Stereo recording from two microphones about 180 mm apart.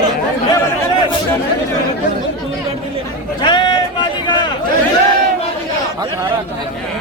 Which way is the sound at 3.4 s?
25° left (ahead or behind).